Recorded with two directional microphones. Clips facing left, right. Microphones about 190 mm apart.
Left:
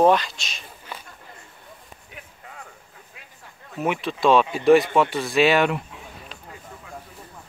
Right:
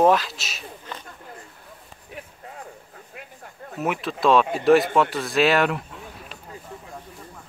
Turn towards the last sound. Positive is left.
turn(degrees=0)  # may be behind; listen again after turning